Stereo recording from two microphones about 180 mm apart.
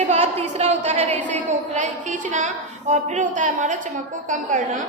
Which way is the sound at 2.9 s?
45° right (ahead or behind).